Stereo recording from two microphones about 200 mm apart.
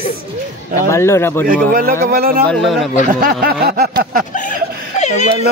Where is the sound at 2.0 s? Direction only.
50° right (ahead or behind).